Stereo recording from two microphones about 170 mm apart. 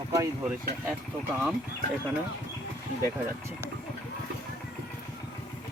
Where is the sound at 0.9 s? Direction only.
10° right (ahead or behind).